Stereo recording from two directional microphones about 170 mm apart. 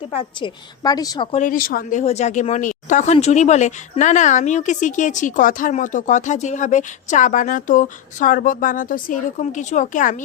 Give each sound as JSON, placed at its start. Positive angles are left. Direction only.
{"t": 0.1, "sound": "a woman's voice", "side_deg": 30}
{"t": 1.3, "sound": "speech", "side_deg": 50}